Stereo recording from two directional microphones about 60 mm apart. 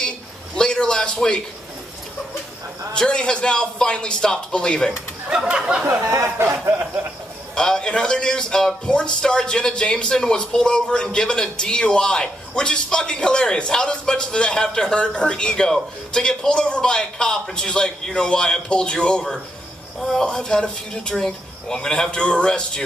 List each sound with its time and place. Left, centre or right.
0.6 s a sound: centre
2.9 s a man's voice: centre
5.3 s speech: centre
5.9 s speech: right
7.5 s a man's voice: centre